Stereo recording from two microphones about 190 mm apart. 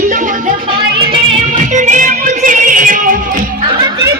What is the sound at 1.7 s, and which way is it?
Music, 40° right (ahead or behind).